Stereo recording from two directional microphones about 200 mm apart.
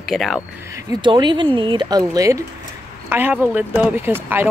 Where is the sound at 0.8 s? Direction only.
20° right (ahead or behind).